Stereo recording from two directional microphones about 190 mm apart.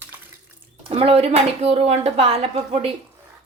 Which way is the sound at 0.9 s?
30° right (ahead or behind).